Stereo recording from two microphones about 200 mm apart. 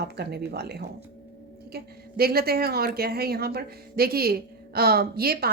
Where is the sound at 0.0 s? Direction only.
55° right (ahead or behind).